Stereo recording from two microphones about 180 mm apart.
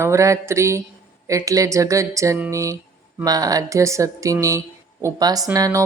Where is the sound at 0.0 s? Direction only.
15° right (ahead or behind).